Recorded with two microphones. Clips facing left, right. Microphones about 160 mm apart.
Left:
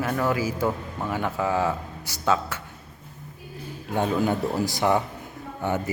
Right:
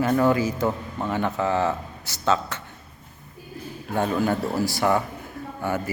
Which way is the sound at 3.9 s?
15° left (ahead or behind).